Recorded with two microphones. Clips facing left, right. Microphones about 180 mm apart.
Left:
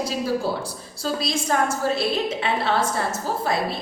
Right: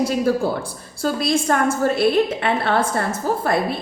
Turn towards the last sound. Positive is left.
turn(degrees=-55)  # may be behind; listen again after turning